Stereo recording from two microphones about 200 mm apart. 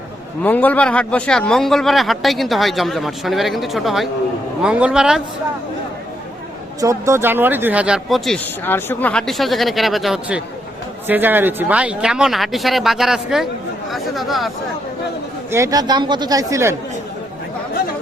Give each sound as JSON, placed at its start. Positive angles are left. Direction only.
{"t": 0.4, "sound": "a man's voice", "side_deg": 10}
{"t": 6.8, "sound": "a man's voice", "side_deg": -15}
{"t": 15.5, "sound": "speech", "side_deg": -15}